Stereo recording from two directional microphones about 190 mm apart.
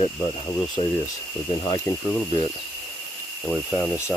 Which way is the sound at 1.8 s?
10° left (ahead or behind).